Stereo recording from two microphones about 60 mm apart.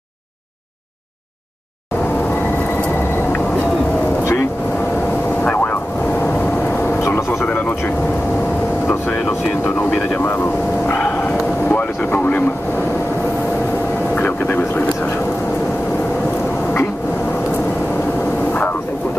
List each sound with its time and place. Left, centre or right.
2.3 s vehicle: left
5.4 s vehicle: left
7.2 s vehicle: left
9.8 s vehicle: left
14.1 s vehicle: left